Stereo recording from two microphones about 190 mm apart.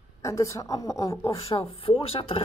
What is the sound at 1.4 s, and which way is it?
Speech, 30° left (ahead or behind).